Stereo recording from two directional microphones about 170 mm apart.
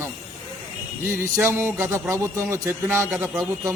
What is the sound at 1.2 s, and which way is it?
Speech, 15° right (ahead or behind).